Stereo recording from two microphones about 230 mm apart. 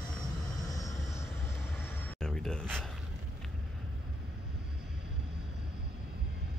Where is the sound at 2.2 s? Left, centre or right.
Centre.